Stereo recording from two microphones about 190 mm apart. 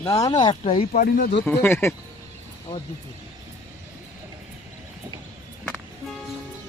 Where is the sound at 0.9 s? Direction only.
50° left (ahead or behind).